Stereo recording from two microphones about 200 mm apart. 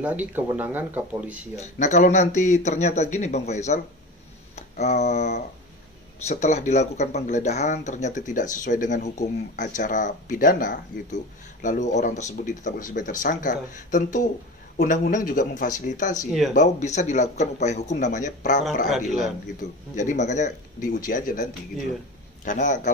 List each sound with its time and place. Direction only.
0.0 s speech: 10° right (ahead or behind)
1.6 s speech: 35° left (ahead or behind)
18.9 s a man's voice: centre (ahead or behind)
20.0 s speech: 35° left (ahead or behind)